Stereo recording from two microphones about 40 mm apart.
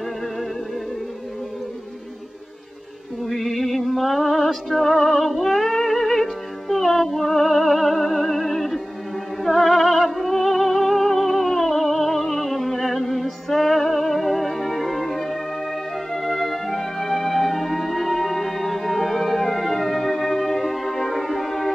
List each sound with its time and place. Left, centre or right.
3.3 s music: centre